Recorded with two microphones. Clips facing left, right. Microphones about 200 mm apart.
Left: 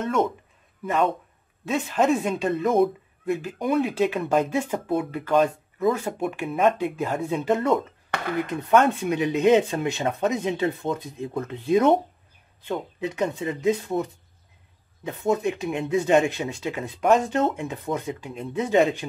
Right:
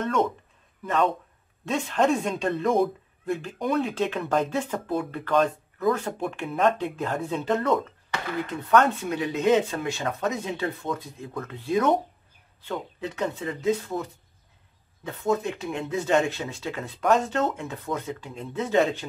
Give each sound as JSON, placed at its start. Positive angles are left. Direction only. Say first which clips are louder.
{"t": 0.0, "sound": "speech", "louder": "left 1 dB", "side_deg": 5}
{"t": 8.1, "sound": "a sound", "louder": "left 2 dB", "side_deg": 60}
{"t": 8.6, "sound": "speech", "louder": "left 2 dB", "side_deg": 20}
{"t": 15.0, "sound": "speech", "louder": "left 2 dB", "side_deg": 15}